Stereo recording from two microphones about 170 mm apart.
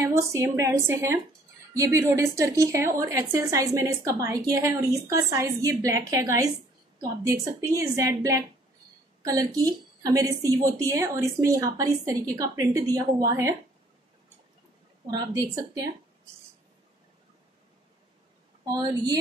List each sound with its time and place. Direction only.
0.0 s a woman's voice: 15° right (ahead or behind)
15.0 s a woman's voice: 20° right (ahead or behind)
18.6 s a woman's voice: 25° right (ahead or behind)